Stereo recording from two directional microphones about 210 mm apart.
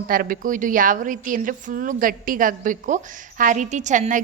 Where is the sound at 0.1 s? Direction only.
40° right (ahead or behind).